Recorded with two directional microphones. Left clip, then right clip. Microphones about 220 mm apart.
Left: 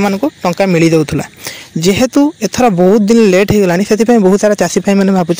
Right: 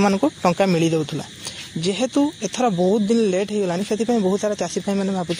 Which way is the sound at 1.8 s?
45° left (ahead or behind).